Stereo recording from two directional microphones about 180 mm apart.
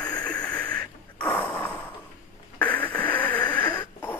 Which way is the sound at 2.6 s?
10° left (ahead or behind).